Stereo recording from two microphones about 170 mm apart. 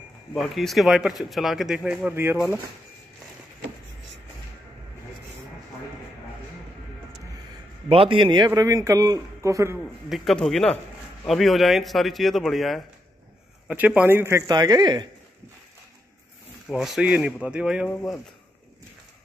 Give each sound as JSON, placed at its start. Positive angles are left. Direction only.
{"t": 0.3, "sound": "speech", "side_deg": 0}
{"t": 7.9, "sound": "a man's voice", "side_deg": -30}
{"t": 10.0, "sound": "a man's voice", "side_deg": 0}
{"t": 16.6, "sound": "speech", "side_deg": 0}